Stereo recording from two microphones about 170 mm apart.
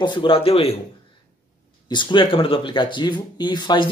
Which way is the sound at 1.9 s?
25° left (ahead or behind).